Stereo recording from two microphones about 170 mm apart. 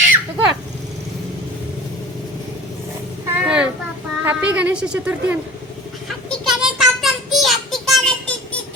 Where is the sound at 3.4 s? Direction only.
5° right (ahead or behind).